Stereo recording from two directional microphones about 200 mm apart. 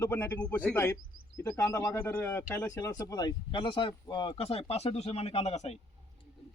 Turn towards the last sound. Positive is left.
turn(degrees=30)  # may be behind; listen again after turning